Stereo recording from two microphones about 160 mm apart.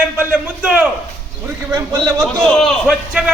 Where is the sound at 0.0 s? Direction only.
10° right (ahead or behind).